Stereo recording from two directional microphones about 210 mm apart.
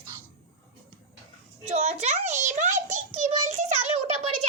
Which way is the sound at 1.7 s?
30° right (ahead or behind).